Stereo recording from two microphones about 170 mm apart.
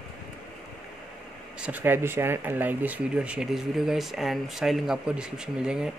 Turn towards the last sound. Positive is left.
turn(degrees=-5)  # may be behind; listen again after turning